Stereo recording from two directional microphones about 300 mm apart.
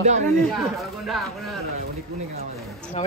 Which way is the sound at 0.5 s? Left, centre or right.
Centre.